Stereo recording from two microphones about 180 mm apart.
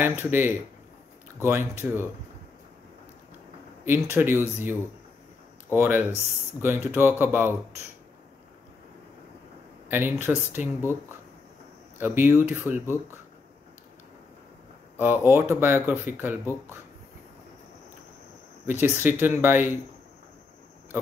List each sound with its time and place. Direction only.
0.0 s speech: 10° right (ahead or behind)
3.8 s speech: 10° right (ahead or behind)
9.8 s speech: 10° right (ahead or behind)
12.0 s speech: 10° right (ahead or behind)
15.0 s speech: 10° right (ahead or behind)
18.7 s speech: 10° right (ahead or behind)